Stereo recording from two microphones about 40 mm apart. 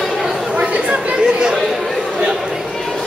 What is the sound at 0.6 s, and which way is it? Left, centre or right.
Chatter, right.